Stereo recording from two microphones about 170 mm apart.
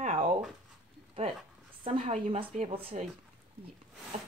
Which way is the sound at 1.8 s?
35° right (ahead or behind).